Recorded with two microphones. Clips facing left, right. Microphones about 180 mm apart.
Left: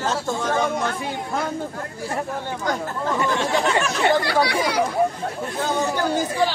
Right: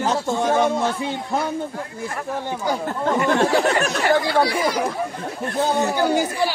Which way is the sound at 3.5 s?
40° right (ahead or behind).